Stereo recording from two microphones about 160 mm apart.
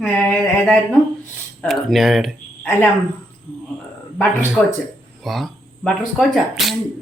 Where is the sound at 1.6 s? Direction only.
Centre (ahead or behind).